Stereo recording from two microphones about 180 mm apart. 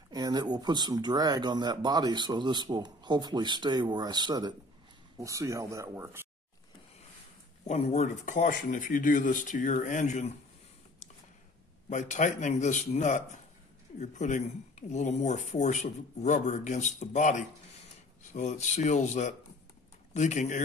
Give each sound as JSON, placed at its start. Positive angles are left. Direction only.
{"t": 0.1, "sound": "speech", "side_deg": -20}
{"t": 7.6, "sound": "speech", "side_deg": 40}
{"t": 11.9, "sound": "speech", "side_deg": 40}